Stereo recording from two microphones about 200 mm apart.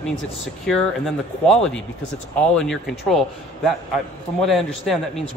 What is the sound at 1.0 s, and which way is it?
A man's voice, 5° left (ahead or behind).